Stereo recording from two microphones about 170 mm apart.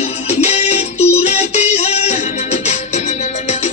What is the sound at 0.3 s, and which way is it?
Music, 40° left (ahead or behind).